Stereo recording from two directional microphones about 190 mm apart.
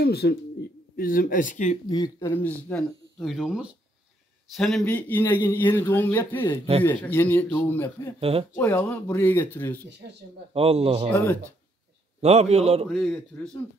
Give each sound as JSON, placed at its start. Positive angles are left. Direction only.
{"t": 0.0, "sound": "speech", "side_deg": 55}
{"t": 1.9, "sound": "a man's voice", "side_deg": 20}
{"t": 3.2, "sound": "a man's voice", "side_deg": 0}
{"t": 8.2, "sound": "a man's voice", "side_deg": -30}
{"t": 8.5, "sound": "a man's voice", "side_deg": 10}
{"t": 10.5, "sound": "a man's voice", "side_deg": -30}
{"t": 11.1, "sound": "a man's voice", "side_deg": 5}
{"t": 12.2, "sound": "a man's voice", "side_deg": -35}
{"t": 12.8, "sound": "speech", "side_deg": 0}